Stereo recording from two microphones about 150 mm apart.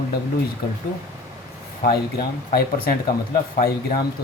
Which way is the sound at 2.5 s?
75° left (ahead or behind).